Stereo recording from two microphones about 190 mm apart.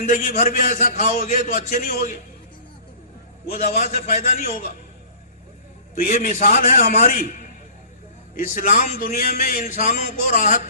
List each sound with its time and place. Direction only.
0.0 s a man's voice: 45° left (ahead or behind)
1.8 s a man's voice: 50° left (ahead or behind)
3.5 s a man's voice: 35° left (ahead or behind)
5.9 s a man's voice: 45° left (ahead or behind)
8.4 s a man's voice: 40° left (ahead or behind)